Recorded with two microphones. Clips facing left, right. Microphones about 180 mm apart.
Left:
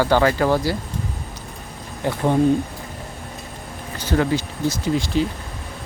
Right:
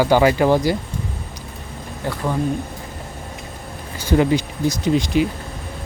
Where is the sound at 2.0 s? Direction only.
25° left (ahead or behind).